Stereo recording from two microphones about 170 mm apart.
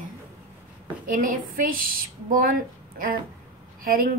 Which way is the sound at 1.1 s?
55° right (ahead or behind).